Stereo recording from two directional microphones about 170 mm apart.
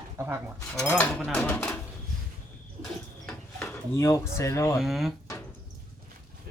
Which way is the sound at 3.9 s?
15° left (ahead or behind).